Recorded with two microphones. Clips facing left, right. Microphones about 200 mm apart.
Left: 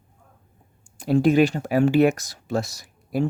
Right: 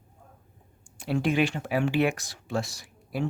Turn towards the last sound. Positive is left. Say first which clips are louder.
# left 7 dB
turn(degrees=40)  # may be behind; listen again after turning